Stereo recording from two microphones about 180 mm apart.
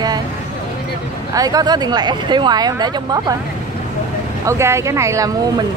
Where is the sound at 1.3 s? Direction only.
20° right (ahead or behind).